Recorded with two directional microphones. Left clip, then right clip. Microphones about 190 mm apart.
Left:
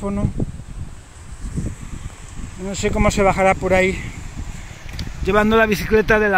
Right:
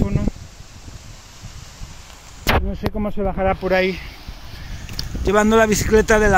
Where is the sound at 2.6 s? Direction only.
15° left (ahead or behind).